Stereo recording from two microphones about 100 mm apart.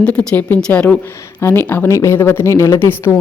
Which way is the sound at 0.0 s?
10° left (ahead or behind).